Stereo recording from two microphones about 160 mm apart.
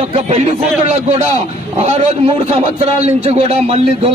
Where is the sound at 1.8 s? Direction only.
45° right (ahead or behind).